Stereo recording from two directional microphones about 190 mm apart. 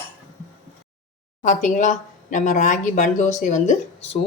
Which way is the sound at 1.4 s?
40° left (ahead or behind).